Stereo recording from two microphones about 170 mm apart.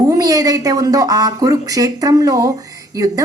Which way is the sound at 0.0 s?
20° right (ahead or behind).